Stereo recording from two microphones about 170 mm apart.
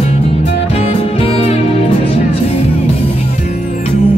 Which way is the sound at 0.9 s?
35° left (ahead or behind).